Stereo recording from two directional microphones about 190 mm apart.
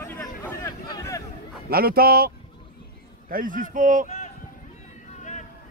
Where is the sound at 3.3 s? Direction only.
45° right (ahead or behind).